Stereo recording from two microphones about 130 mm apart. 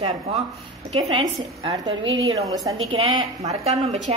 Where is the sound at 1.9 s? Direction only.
45° right (ahead or behind).